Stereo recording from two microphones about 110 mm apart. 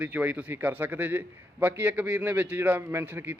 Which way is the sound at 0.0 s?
15° right (ahead or behind).